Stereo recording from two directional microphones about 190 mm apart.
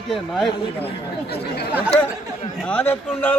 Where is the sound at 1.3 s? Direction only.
60° left (ahead or behind).